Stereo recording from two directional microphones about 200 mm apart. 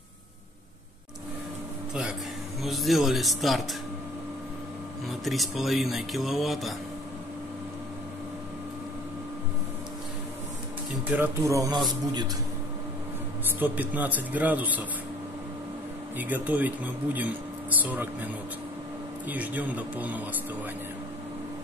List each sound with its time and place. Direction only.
2.6 s music: centre (ahead or behind)
5.2 s music: centre (ahead or behind)
11.1 s speech: 10° right (ahead or behind)
13.6 s speech: 10° right (ahead or behind)
16.2 s speech: 10° right (ahead or behind)